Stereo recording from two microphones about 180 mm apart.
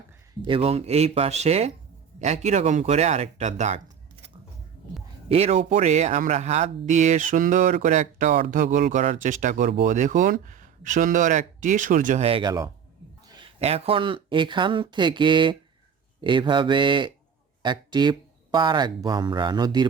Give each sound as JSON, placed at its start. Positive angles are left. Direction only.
{"t": 0.4, "sound": "speech", "side_deg": -30}
{"t": 5.3, "sound": "speech", "side_deg": -35}
{"t": 13.2, "sound": "a sound", "side_deg": -25}
{"t": 13.6, "sound": "speech", "side_deg": -35}